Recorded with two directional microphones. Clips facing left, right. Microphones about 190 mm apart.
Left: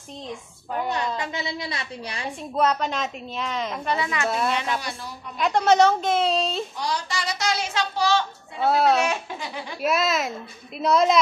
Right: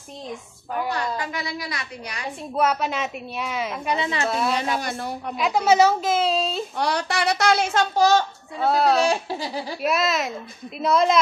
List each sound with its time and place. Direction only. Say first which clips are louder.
0.8 s a woman's voice: left 1 dB; 20° left (ahead or behind)
2.5 s a woman's voice: even; 10° right (ahead or behind)
4.0 s speech: right 1 dB; 30° right (ahead or behind)
4.3 s a woman's voice: even; centre (ahead or behind)
4.7 s a woman's voice: right 5 dB; 55° right (ahead or behind)
5.4 s a woman's voice: even; 5° right (ahead or behind)
6.8 s a child's voice: right 5 dB; 60° right (ahead or behind); by 8.3 s 45° right (ahead or behind)
8.5 s a woman's voice: even; centre (ahead or behind)
9.0 s speech: right 4 dB; 35° right (ahead or behind)
9.8 s a woman's voice: even; centre (ahead or behind)